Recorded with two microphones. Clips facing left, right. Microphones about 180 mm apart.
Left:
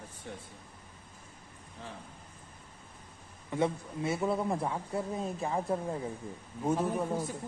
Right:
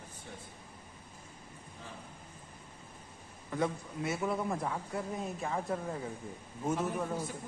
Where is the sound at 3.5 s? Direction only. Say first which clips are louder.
Left 3 dB; 25° left (ahead or behind).